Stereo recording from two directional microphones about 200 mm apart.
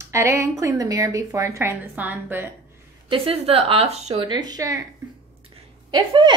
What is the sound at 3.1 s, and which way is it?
A woman's voice, 30° right (ahead or behind).